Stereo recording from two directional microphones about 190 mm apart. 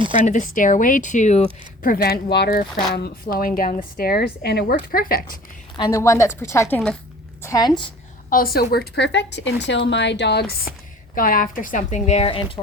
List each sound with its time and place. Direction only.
0.3 s speech: 40° left (ahead or behind)
5.7 s a woman's voice: 20° left (ahead or behind)
8.3 s speech: 50° left (ahead or behind); by 12.5 s 30° left (ahead or behind)